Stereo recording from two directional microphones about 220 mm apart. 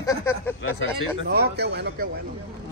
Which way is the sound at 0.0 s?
15° left (ahead or behind).